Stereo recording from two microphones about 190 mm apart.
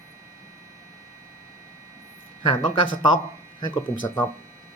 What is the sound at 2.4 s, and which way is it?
Speech, 25° left (ahead or behind).